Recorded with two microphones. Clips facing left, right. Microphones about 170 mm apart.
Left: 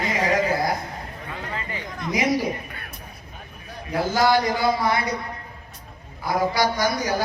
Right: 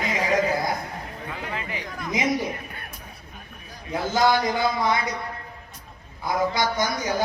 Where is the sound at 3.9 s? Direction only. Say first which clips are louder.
Left 1 dB; 20° right (ahead or behind).